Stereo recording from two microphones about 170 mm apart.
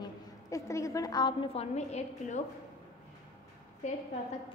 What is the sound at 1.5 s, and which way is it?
Speech, 40° left (ahead or behind).